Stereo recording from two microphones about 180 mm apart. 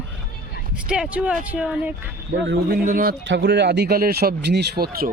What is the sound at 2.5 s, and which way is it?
Speech, 50° right (ahead or behind).